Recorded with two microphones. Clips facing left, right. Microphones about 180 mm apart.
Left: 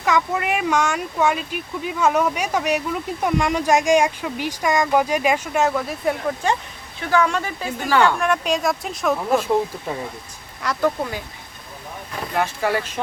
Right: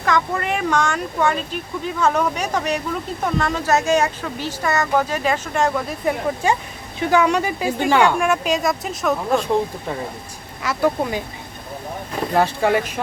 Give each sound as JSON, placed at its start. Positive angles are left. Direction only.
{"t": 0.0, "sound": "speech", "side_deg": 10}
{"t": 7.0, "sound": "speech", "side_deg": -20}
{"t": 10.6, "sound": "speech", "side_deg": -5}
{"t": 12.3, "sound": "speech", "side_deg": -35}